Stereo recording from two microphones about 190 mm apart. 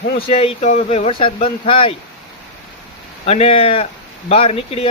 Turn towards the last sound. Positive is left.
turn(degrees=30)  # may be behind; listen again after turning